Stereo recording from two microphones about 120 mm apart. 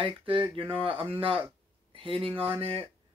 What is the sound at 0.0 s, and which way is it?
Speech, 45° right (ahead or behind).